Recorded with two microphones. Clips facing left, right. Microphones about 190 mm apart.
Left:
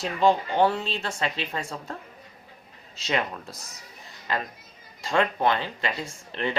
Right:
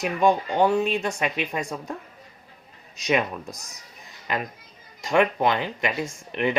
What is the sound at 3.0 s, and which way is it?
Speech, 15° right (ahead or behind).